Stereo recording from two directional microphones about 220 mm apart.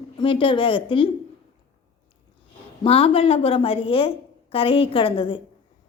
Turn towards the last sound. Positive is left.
turn(degrees=25)  # may be behind; listen again after turning